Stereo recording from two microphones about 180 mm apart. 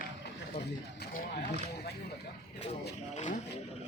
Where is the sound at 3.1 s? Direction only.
45° left (ahead or behind).